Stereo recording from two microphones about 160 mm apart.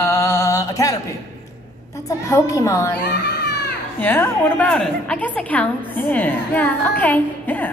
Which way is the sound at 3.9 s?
10° left (ahead or behind).